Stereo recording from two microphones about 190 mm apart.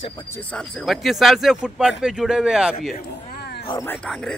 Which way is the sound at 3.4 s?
60° left (ahead or behind).